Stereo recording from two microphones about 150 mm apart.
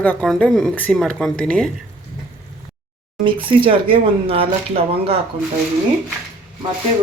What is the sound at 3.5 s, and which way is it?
Speech, 35° right (ahead or behind).